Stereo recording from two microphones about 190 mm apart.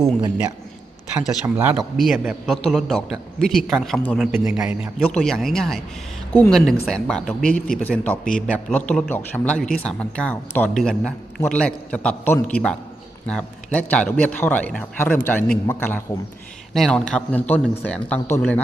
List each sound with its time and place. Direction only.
0.0 s a man's voice: 20° right (ahead or behind)
1.2 s speech: centre (ahead or behind)
1.5 s speech: 10° right (ahead or behind)
1.8 s a man's voice: centre (ahead or behind)